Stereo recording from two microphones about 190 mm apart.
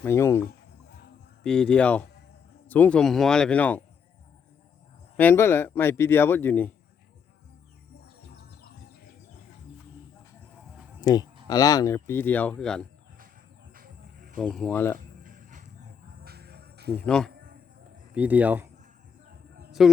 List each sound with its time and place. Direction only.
0.0 s speech: 15° left (ahead or behind)
1.5 s speech: 5° left (ahead or behind)
5.1 s speech: 10° left (ahead or behind)
8.4 s music: 55° left (ahead or behind)
11.0 s speech: 20° left (ahead or behind); by 12.9 s 5° left (ahead or behind)
13.7 s a sound: 45° right (ahead or behind)
14.3 s speech: 5° left (ahead or behind)
14.9 s a sound: 45° right (ahead or behind)
16.2 s music: 55° right (ahead or behind)
17.1 s speech: 5° left (ahead or behind)
17.3 s a sound: 50° right (ahead or behind)
18.1 s speech: 10° right (ahead or behind)
19.8 s speech: centre (ahead or behind)